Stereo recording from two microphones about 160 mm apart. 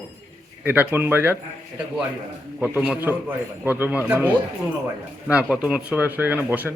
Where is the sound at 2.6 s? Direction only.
10° right (ahead or behind).